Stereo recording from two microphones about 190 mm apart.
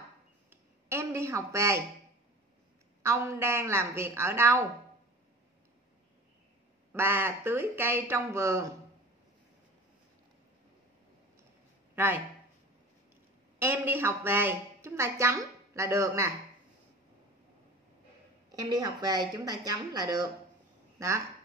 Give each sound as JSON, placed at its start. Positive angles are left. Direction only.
{"t": 0.5, "sound": "a sound", "side_deg": -15}
{"t": 3.0, "sound": "speech", "side_deg": -15}
{"t": 6.9, "sound": "speech", "side_deg": -10}
{"t": 11.9, "sound": "a sound", "side_deg": -10}
{"t": 13.6, "sound": "a woman's voice", "side_deg": -10}
{"t": 18.5, "sound": "a woman's voice", "side_deg": -20}